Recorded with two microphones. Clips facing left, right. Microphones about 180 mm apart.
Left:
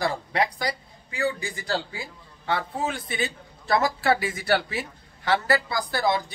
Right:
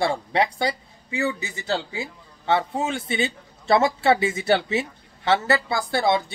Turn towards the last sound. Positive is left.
turn(degrees=-25)  # may be behind; listen again after turning